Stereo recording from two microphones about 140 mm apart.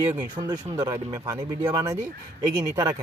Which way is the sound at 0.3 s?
30° right (ahead or behind).